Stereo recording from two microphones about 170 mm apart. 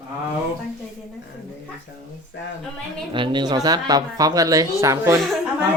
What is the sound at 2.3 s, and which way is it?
Speech, 90° left.